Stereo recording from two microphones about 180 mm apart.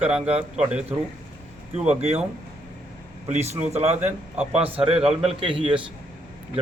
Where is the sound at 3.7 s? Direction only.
35° right (ahead or behind).